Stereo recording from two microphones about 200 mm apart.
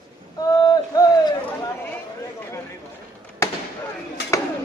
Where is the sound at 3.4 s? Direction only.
15° left (ahead or behind).